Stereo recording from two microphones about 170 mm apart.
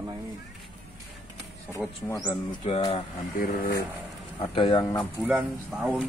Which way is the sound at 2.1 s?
20° left (ahead or behind).